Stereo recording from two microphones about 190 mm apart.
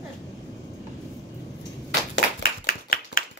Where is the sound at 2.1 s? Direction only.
55° left (ahead or behind).